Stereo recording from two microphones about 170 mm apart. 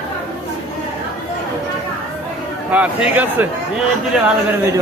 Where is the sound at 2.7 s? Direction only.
10° right (ahead or behind).